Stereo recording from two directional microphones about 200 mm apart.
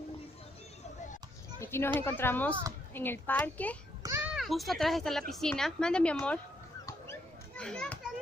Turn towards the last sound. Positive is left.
turn(degrees=5)  # may be behind; listen again after turning